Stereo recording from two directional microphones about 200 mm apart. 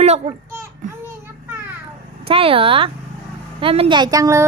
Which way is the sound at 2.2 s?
25° right (ahead or behind).